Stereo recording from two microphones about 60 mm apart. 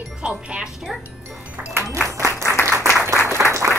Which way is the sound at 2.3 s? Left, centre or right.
Right.